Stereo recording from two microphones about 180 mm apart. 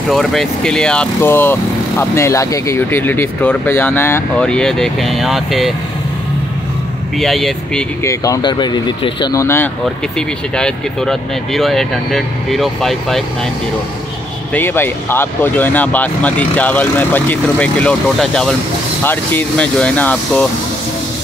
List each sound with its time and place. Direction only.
0.1 s speech: centre (ahead or behind)
7.2 s speech: centre (ahead or behind)
8.0 s speech: 15° left (ahead or behind)
10.1 s speech: 5° left (ahead or behind)
14.5 s speech: 10° left (ahead or behind)